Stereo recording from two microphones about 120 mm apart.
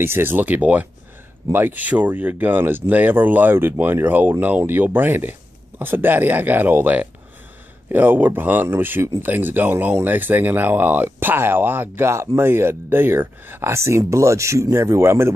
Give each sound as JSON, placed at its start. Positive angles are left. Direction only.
{"t": 0.0, "sound": "speech", "side_deg": -20}